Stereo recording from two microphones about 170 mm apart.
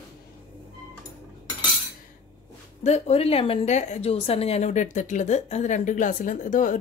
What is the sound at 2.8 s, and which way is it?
A woman's voice, 40° left (ahead or behind).